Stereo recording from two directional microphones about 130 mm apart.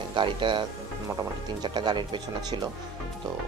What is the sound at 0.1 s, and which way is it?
Speech, 40° right (ahead or behind).